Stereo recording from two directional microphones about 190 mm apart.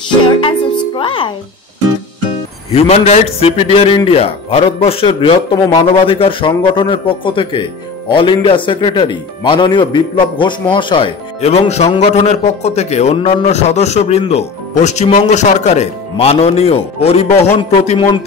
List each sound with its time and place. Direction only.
0.4 s music: 25° left (ahead or behind)
2.7 s a man's voice: 35° left (ahead or behind)